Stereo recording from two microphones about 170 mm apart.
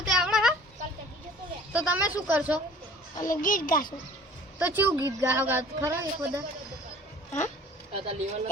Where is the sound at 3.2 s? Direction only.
50° left (ahead or behind).